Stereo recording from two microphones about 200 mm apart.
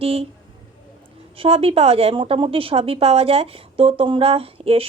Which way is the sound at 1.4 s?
30° right (ahead or behind).